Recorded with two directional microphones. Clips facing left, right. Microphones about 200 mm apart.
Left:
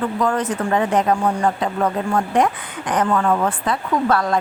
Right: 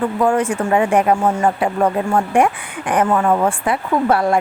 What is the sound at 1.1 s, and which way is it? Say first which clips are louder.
Speech: right 2 dB; 25° right (ahead or behind).